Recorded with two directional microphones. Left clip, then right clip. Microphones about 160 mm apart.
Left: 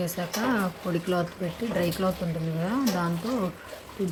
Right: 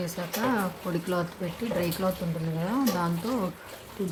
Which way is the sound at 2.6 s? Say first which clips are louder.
Even; 10° left (ahead or behind).